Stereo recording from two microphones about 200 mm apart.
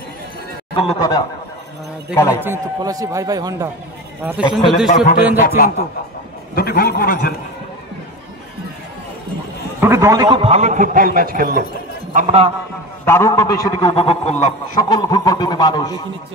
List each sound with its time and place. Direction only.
0.7 s a man's voice: 25° left (ahead or behind)
2.4 s a man's voice: 15° right (ahead or behind)
5.0 s speech: 45° left (ahead or behind)
6.5 s speech: 50° left (ahead or behind)
9.8 s a man's voice: 15° right (ahead or behind); by 11.6 s 50° right (ahead or behind)
12.1 s speech: 35° right (ahead or behind)
13.0 s a man's voice: 15° left (ahead or behind); by 14.8 s 35° left (ahead or behind)
14.8 s a man's voice: 20° left (ahead or behind)